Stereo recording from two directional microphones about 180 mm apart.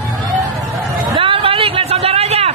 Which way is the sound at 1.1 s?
30° right (ahead or behind).